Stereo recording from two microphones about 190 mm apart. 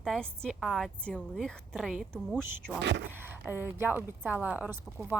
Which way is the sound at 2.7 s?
65° right (ahead or behind).